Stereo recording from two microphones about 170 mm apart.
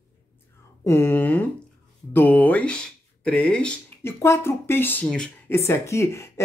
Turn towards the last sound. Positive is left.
turn(degrees=15)  # may be behind; listen again after turning